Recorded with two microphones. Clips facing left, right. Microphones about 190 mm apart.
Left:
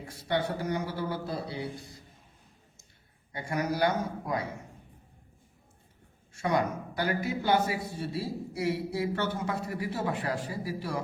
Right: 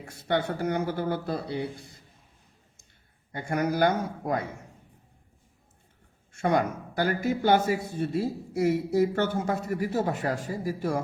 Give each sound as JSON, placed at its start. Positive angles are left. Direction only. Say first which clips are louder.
{"t": 0.0, "sound": "a man's voice", "louder": "right 3 dB", "side_deg": -50}
{"t": 3.3, "sound": "a man's voice", "louder": "right 4 dB", "side_deg": -55}
{"t": 6.3, "sound": "a man's voice", "louder": "right 3 dB", "side_deg": -50}